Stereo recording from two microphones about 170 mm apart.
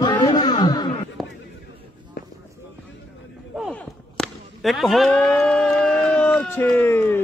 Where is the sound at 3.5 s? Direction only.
Centre (ahead or behind).